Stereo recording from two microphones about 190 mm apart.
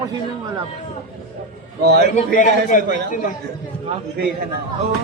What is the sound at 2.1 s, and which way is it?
A man's voice, 45° left (ahead or behind).